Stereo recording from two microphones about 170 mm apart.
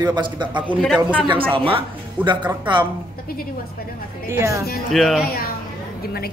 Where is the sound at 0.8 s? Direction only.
5° right (ahead or behind).